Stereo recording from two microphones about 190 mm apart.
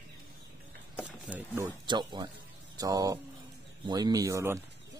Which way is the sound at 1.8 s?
25° right (ahead or behind).